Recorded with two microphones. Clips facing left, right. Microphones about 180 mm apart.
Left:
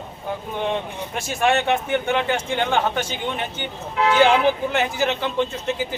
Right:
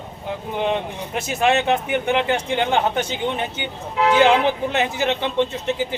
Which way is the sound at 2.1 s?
15° right (ahead or behind).